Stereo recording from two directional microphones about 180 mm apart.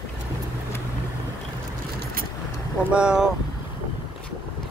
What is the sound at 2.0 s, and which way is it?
Vehicle, 55° right (ahead or behind).